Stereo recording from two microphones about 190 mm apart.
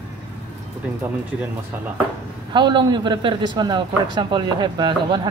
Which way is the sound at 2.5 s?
25° right (ahead or behind).